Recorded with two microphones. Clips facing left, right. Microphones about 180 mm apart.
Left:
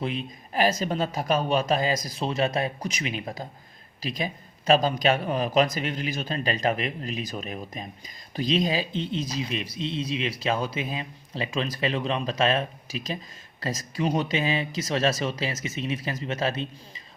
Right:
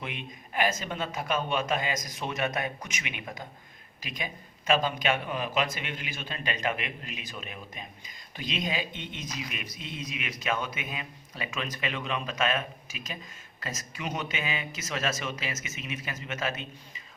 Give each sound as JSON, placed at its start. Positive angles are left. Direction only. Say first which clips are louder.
{"t": 0.0, "sound": "speech", "louder": "left 8 dB", "side_deg": 35}